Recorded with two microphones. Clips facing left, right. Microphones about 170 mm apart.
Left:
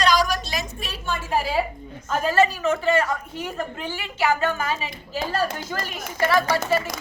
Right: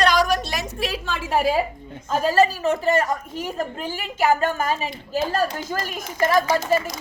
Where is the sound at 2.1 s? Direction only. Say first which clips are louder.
Right 2 dB; 35° right (ahead or behind).